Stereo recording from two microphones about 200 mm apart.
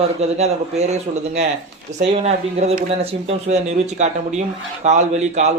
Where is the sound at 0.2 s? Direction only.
30° right (ahead or behind).